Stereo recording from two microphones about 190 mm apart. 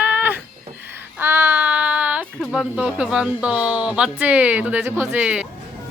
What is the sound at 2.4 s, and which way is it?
Speech, 5° right (ahead or behind).